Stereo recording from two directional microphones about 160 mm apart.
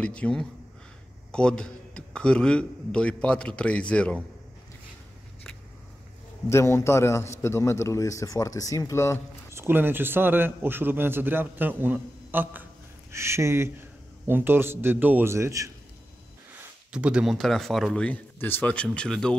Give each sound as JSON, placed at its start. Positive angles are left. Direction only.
{"t": 0.0, "sound": "a man's voice", "side_deg": 5}
{"t": 6.5, "sound": "a man's voice", "side_deg": 15}
{"t": 9.5, "sound": "a man's voice", "side_deg": -15}
{"t": 16.9, "sound": "speech", "side_deg": -5}